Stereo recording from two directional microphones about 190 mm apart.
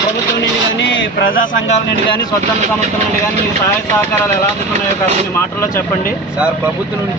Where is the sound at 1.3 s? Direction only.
45° left (ahead or behind).